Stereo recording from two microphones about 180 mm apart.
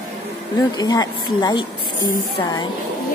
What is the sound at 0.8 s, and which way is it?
Speech, 20° left (ahead or behind).